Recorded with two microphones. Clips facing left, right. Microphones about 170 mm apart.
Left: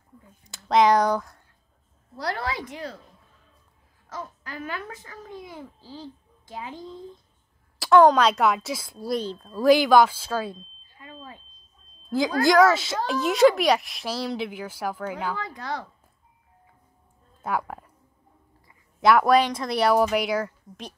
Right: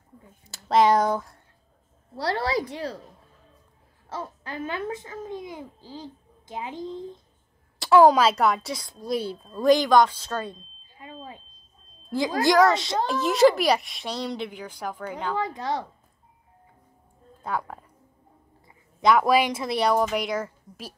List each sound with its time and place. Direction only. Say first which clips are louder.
0.5 s speech: even; 5° right (ahead or behind)
2.1 s a woman's voice: right 4 dB; 30° right (ahead or behind)
4.1 s a child's voice: right 2 dB; 30° right (ahead or behind)
7.8 s speech: even; 5° right (ahead or behind)
9.2 s speech: even; 10° right (ahead or behind)
9.5 s speech: left 1 dB; 5° left (ahead or behind)
12.1 s speech: left 1 dB; centre (ahead or behind)
15.3 s a child's voice: right 5 dB; 20° right (ahead or behind)
17.4 s speech: left 2 dB; 10° left (ahead or behind)
18.9 s speech: left 1 dB; centre (ahead or behind)